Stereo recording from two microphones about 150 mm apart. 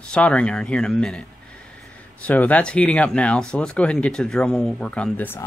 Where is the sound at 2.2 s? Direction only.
10° left (ahead or behind).